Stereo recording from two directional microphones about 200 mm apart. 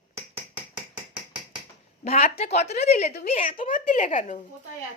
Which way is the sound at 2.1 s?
30° left (ahead or behind).